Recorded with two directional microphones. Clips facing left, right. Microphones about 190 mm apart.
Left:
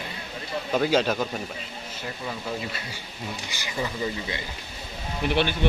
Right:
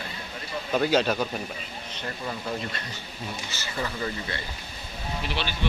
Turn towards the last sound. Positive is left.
turn(degrees=55)  # may be behind; listen again after turning